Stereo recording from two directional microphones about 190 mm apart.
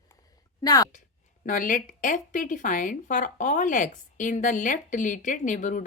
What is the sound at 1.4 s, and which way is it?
Speech, 45° left (ahead or behind).